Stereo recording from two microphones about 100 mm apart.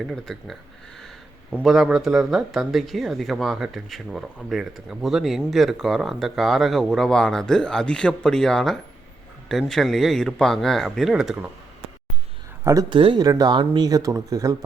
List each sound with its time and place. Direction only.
0.3 s speech: centre (ahead or behind)
12.9 s speech: 60° right (ahead or behind)
13.1 s speech: 40° right (ahead or behind)